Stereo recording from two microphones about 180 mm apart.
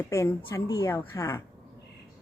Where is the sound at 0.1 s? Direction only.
15° left (ahead or behind).